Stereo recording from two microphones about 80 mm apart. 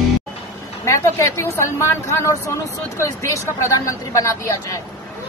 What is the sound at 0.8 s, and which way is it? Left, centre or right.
A woman's voice, left.